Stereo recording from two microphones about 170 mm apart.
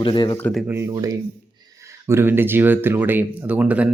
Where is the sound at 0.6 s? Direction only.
15° right (ahead or behind).